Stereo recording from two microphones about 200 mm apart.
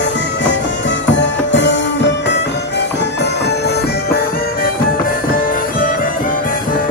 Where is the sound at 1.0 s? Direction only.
60° left (ahead or behind).